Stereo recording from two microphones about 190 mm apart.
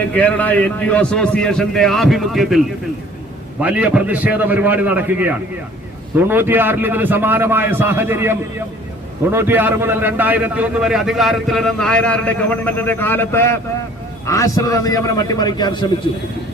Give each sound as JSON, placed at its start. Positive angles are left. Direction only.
{"t": 0.0, "sound": "a man's voice", "side_deg": 10}
{"t": 3.6, "sound": "a man's voice", "side_deg": -5}